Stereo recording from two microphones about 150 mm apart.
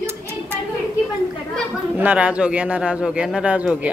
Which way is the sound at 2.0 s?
10° right (ahead or behind).